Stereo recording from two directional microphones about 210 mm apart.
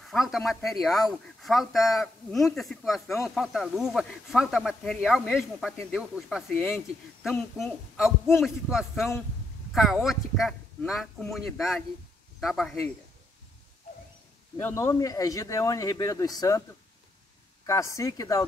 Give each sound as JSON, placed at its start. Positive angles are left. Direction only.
{"t": 0.1, "sound": "speech", "side_deg": 0}
{"t": 8.9, "sound": "speech", "side_deg": 10}
{"t": 9.7, "sound": "speech", "side_deg": 0}
{"t": 14.6, "sound": "speech", "side_deg": 10}
{"t": 17.6, "sound": "speech", "side_deg": 15}